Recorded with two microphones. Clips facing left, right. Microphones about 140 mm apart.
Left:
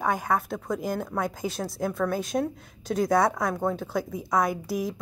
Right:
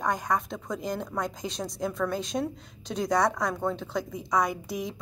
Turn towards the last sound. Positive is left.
turn(degrees=0)  # may be behind; listen again after turning